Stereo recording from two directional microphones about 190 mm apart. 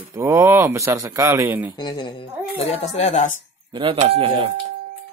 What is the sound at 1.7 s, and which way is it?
Speech, 25° left (ahead or behind).